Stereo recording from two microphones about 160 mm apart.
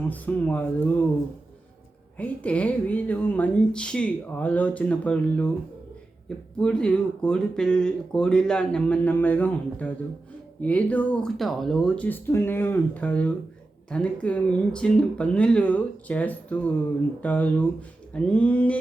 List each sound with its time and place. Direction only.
0.1 s speech: 10° left (ahead or behind)
2.1 s speech: 10° left (ahead or behind)